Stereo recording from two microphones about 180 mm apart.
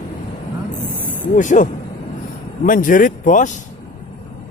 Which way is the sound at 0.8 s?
50° left (ahead or behind).